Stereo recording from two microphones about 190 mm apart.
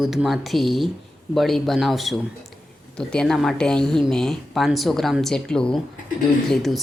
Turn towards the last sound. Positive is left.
turn(degrees=0)  # may be behind; listen again after turning